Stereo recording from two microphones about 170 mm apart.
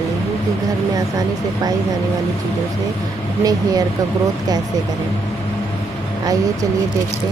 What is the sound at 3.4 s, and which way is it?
Speech, 20° right (ahead or behind).